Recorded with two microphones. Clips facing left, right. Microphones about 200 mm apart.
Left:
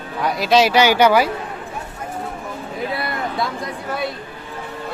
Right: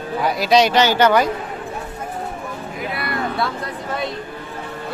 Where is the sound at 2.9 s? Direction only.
20° left (ahead or behind).